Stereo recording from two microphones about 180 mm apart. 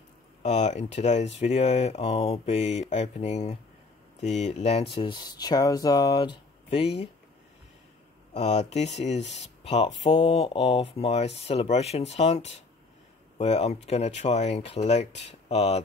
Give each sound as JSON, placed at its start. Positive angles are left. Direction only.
{"t": 0.4, "sound": "speech", "side_deg": 40}
{"t": 8.3, "sound": "speech", "side_deg": 40}